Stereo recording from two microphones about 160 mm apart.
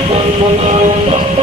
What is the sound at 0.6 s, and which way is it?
Music, 45° right (ahead or behind).